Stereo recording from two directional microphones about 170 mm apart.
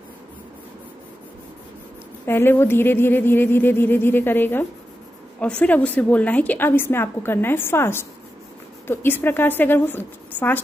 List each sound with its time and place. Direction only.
2.2 s a woman's voice: 15° left (ahead or behind)